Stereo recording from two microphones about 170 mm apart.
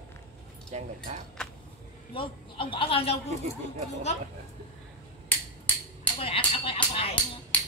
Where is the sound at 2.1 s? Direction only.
30° left (ahead or behind).